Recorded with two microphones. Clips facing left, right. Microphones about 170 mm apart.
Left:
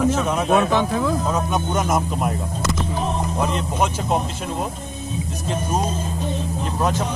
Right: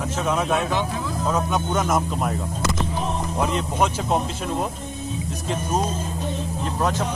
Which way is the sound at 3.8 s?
5° left (ahead or behind).